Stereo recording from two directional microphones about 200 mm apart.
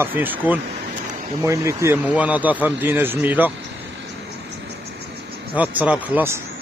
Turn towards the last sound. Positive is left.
turn(degrees=-10)  # may be behind; listen again after turning